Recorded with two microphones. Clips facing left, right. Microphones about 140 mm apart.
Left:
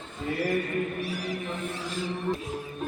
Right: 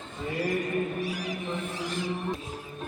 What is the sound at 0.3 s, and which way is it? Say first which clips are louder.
Speech: left 1 dB; 15° right (ahead or behind).